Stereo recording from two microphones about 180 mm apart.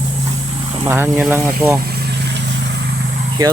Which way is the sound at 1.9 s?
75° right (ahead or behind).